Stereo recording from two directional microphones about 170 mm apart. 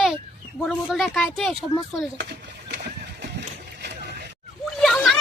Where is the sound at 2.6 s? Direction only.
90° right.